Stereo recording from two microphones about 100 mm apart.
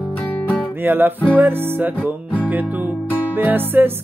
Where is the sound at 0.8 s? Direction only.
20° right (ahead or behind).